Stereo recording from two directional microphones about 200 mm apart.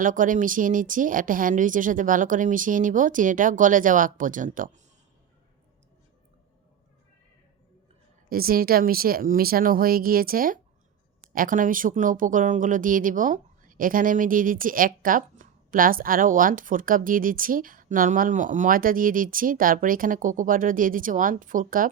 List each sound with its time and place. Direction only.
0.0 s speech: 40° right (ahead or behind)
8.3 s speech: 45° right (ahead or behind)